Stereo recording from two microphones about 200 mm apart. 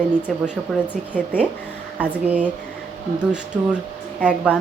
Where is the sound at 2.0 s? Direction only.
5° right (ahead or behind).